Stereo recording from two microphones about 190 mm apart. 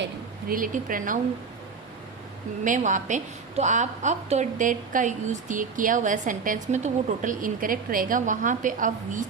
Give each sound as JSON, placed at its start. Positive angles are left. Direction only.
{"t": 0.0, "sound": "a woman's voice", "side_deg": -50}
{"t": 2.6, "sound": "a woman's voice", "side_deg": -40}